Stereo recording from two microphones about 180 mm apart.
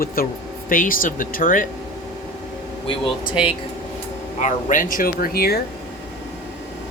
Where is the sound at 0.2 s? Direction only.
55° left (ahead or behind).